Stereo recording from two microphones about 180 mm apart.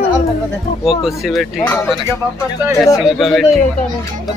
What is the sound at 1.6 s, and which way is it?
Speech, 10° left (ahead or behind).